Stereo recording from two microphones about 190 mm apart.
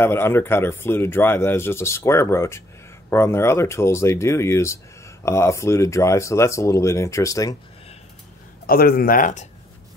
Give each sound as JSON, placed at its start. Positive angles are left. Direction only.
{"t": 0.0, "sound": "speech", "side_deg": 10}
{"t": 8.6, "sound": "speech", "side_deg": 50}